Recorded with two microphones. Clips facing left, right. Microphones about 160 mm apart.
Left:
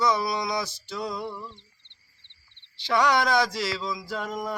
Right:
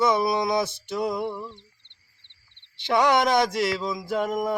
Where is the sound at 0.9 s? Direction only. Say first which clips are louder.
Right 6 dB; 55° right (ahead or behind).